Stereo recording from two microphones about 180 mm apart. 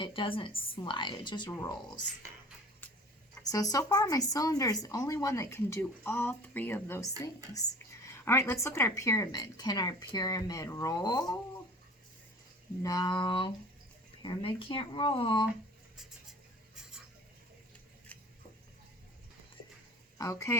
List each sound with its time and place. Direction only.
0.0 s speech: 30° left (ahead or behind)
3.4 s speech: 20° left (ahead or behind)
12.8 s speech: 20° left (ahead or behind)
20.1 s speech: 15° left (ahead or behind)